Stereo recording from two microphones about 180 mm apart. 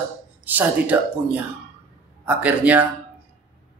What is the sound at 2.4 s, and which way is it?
Speech, 10° right (ahead or behind).